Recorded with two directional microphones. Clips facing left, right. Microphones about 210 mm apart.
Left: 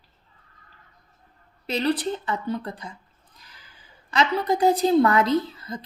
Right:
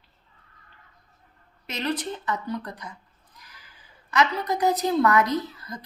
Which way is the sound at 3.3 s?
30° left (ahead or behind).